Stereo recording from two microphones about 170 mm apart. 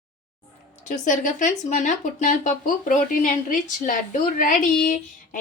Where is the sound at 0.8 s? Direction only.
50° left (ahead or behind).